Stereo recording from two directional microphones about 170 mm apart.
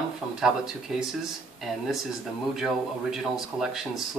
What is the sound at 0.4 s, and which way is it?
Speech, 5° right (ahead or behind).